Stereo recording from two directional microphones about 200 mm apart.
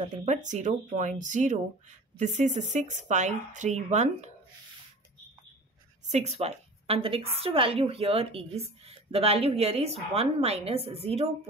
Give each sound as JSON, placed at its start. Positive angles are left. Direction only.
{"t": 0.2, "sound": "speech", "side_deg": -35}
{"t": 6.0, "sound": "a woman's voice", "side_deg": -35}